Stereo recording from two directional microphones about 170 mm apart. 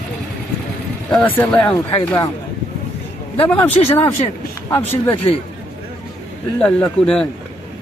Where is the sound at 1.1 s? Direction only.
10° left (ahead or behind).